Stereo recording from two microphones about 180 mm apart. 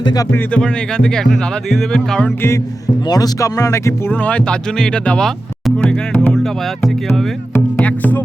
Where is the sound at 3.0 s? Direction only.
20° left (ahead or behind).